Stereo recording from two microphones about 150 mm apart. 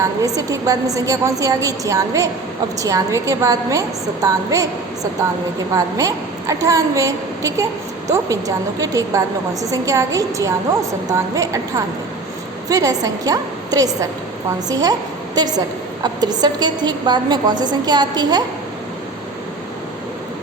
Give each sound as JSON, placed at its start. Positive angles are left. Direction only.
{"t": 0.0, "sound": "a woman's voice", "side_deg": -20}
{"t": 5.7, "sound": "a woman's voice", "side_deg": -20}
{"t": 16.0, "sound": "a woman's voice", "side_deg": -25}